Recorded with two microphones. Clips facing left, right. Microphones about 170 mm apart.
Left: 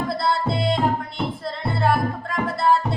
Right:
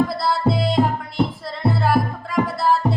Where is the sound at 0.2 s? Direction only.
Centre (ahead or behind).